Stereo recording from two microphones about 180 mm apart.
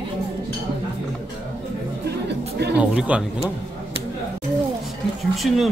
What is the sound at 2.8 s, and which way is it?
Speech, 5° right (ahead or behind).